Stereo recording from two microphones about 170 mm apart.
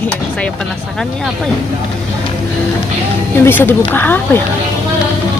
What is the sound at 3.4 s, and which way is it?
Speech, 10° left (ahead or behind).